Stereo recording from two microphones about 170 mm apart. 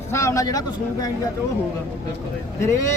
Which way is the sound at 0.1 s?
15° left (ahead or behind).